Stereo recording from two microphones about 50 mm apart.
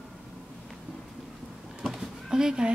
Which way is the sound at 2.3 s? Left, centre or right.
Centre.